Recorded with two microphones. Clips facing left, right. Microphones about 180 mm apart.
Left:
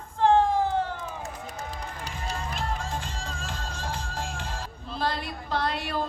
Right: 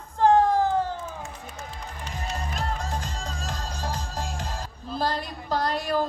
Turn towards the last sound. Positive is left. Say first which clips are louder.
# right 3 dB
turn(degrees=-40)  # may be behind; listen again after turning